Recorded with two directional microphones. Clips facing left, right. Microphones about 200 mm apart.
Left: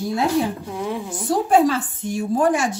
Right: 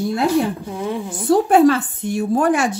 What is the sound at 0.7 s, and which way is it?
Speech, centre (ahead or behind).